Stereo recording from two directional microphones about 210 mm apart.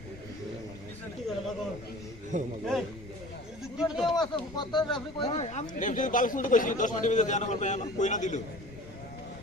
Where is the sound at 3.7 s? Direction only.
Centre (ahead or behind).